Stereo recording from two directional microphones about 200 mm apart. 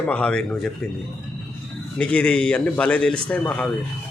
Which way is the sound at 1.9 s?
5° left (ahead or behind).